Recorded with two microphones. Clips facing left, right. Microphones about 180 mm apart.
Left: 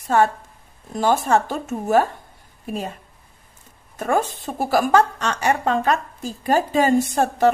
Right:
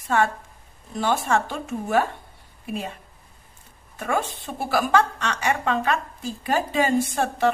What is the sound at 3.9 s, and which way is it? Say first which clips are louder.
A woman's voice: left 5 dB; 40° left (ahead or behind).